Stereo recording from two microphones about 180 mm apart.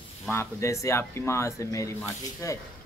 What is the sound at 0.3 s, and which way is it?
Speech, 15° left (ahead or behind).